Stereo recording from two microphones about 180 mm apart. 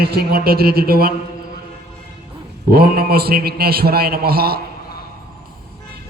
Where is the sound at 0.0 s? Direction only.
60° right (ahead or behind).